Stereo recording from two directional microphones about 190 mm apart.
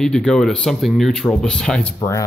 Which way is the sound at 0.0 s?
5° left (ahead or behind).